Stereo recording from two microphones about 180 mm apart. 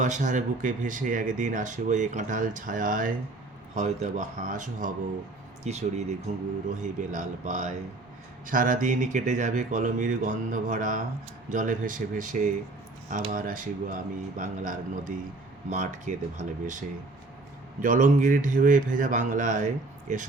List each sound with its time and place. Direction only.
0.0 s speech: 45° right (ahead or behind)